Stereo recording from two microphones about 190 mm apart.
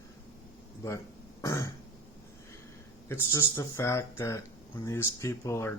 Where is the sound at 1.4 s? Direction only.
15° left (ahead or behind).